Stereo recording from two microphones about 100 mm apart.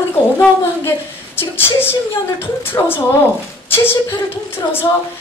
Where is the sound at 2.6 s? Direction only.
20° left (ahead or behind).